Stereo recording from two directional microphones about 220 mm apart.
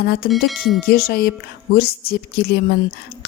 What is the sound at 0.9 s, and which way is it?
A woman's voice, 45° left (ahead or behind).